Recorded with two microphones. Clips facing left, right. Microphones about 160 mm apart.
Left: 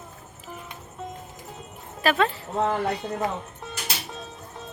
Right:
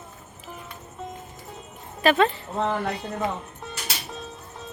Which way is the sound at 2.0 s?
Centre (ahead or behind).